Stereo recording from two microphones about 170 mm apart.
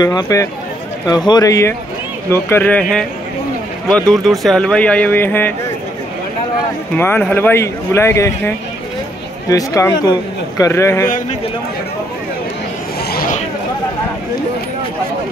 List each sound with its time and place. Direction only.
0.0 s a man's voice: 25° left (ahead or behind)
7.0 s a man's voice: 10° left (ahead or behind)
11.1 s a man's voice: 50° left (ahead or behind)
13.1 s a sound: 60° left (ahead or behind)